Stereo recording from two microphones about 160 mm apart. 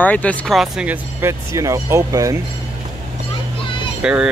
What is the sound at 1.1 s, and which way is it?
Speech, 20° right (ahead or behind).